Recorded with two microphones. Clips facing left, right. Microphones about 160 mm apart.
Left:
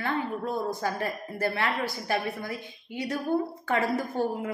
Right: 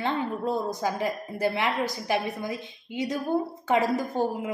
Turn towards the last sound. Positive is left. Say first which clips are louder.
# right 1 dB
turn(degrees=-20)  # may be behind; listen again after turning